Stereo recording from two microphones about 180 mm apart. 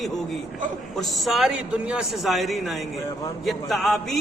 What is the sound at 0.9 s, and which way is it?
A man's voice, centre (ahead or behind).